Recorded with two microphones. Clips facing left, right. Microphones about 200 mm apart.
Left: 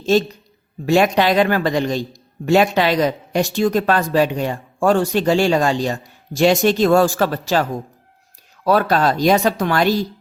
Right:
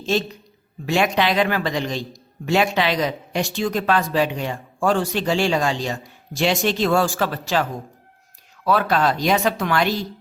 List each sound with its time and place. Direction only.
0.0 s a man's voice: 40° left (ahead or behind)
8.6 s speech: 40° left (ahead or behind)